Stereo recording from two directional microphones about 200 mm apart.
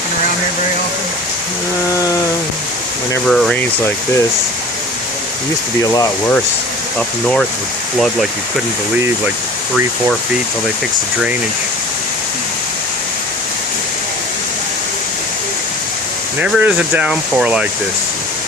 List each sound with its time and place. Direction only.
3.2 s speech: centre (ahead or behind)
5.8 s speech: 15° left (ahead or behind)
7.9 s speech: centre (ahead or behind)
16.4 s speech: 5° right (ahead or behind)